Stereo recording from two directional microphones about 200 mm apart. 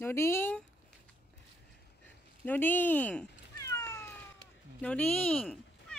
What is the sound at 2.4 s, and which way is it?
Cat, 10° left (ahead or behind).